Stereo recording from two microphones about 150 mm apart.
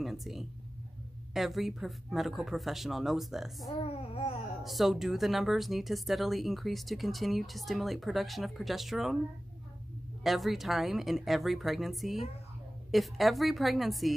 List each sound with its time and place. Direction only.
0.0 s speech: centre (ahead or behind)
3.7 s speech: 40° left (ahead or behind)
4.6 s speech: centre (ahead or behind)
10.2 s speech: centre (ahead or behind)